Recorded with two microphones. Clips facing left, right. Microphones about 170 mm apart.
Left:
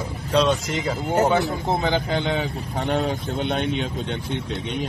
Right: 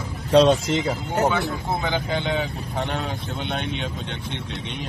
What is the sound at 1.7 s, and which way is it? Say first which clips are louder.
Speech: left 3 dB; 40° left (ahead or behind).